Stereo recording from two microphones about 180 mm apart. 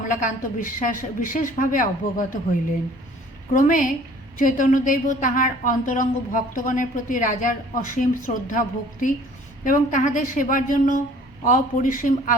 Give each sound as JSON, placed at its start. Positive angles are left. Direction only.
{"t": 0.0, "sound": "a woman's voice", "side_deg": 45}
{"t": 3.5, "sound": "a woman's voice", "side_deg": 45}